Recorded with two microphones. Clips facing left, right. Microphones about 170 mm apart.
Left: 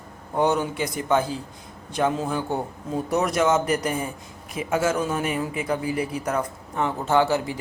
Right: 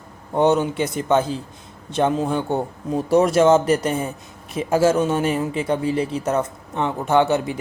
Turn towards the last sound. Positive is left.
turn(degrees=-20)  # may be behind; listen again after turning